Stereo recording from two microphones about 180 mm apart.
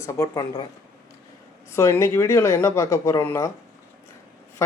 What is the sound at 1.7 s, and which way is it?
Speech, 15° left (ahead or behind).